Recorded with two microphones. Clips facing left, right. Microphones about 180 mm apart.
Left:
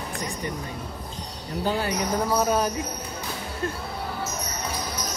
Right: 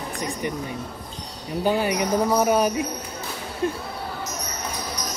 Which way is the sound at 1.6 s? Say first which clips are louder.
Right 4 dB; 15° right (ahead or behind).